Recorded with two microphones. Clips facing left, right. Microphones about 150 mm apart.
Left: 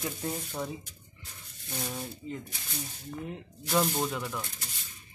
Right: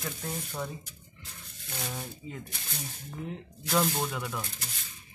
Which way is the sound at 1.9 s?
5° right (ahead or behind).